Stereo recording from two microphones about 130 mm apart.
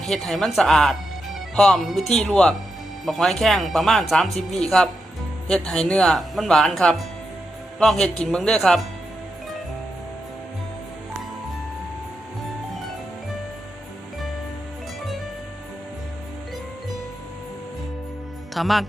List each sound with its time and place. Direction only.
0.0 s speech: 5° left (ahead or behind)
18.5 s speech: centre (ahead or behind)